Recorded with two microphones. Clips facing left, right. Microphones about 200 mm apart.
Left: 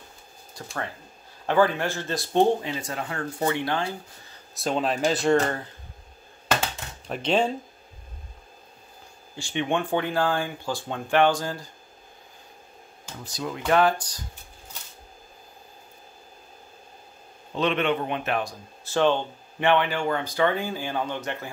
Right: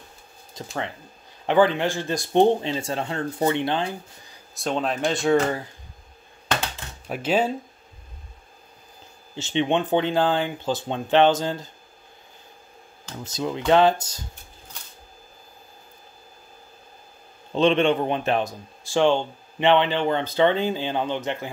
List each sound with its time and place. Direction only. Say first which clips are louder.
0.6 s speech: right 3 dB; 20° right (ahead or behind)
4.6 s speech: even; centre (ahead or behind)
7.1 s speech: right 1 dB; 5° right (ahead or behind)
9.3 s speech: right 4 dB; 20° right (ahead or behind)
13.2 s speech: right 4 dB; 25° right (ahead or behind)
17.6 s speech: right 5 dB; 30° right (ahead or behind)
18.9 s speech: right 2 dB; 15° right (ahead or behind)